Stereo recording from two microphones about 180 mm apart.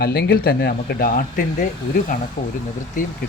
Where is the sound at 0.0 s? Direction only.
60° left (ahead or behind).